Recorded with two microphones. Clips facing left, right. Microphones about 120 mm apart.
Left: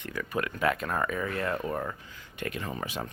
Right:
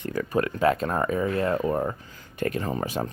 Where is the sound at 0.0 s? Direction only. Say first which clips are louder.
Right 7 dB; 35° right (ahead or behind).